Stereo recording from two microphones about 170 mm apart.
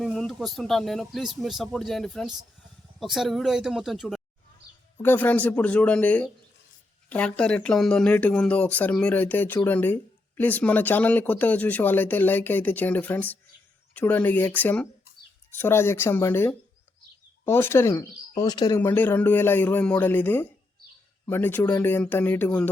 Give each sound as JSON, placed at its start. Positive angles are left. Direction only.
{"t": 0.0, "sound": "speech", "side_deg": 0}
{"t": 5.0, "sound": "speech", "side_deg": 10}
{"t": 18.8, "sound": "speech", "side_deg": 10}